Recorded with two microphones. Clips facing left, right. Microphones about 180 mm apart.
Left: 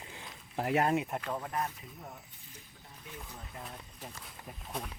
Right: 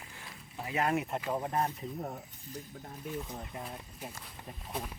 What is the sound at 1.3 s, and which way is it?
Speech, 30° right (ahead or behind).